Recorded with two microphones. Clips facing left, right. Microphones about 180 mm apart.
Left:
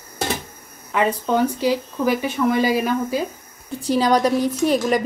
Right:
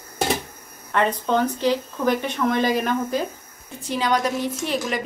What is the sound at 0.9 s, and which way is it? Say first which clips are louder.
Speech: left 1 dB; 10° left (ahead or behind).